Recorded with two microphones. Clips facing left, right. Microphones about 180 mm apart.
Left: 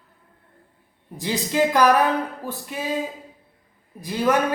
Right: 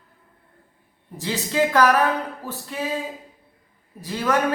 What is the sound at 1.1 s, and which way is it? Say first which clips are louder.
Speech: left 1 dB; 15° left (ahead or behind).